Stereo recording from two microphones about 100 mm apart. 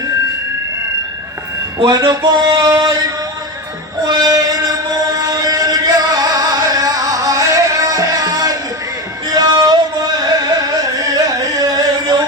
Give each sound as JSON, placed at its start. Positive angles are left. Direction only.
{"t": 1.8, "sound": "speech", "side_deg": -40}
{"t": 4.0, "sound": "female singing", "side_deg": -40}
{"t": 5.0, "sound": "music", "side_deg": -35}
{"t": 10.4, "sound": "carnatic music", "side_deg": -35}